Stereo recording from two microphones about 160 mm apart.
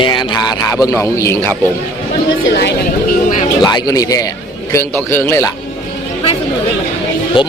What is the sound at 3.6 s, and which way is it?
A man's voice, 25° left (ahead or behind).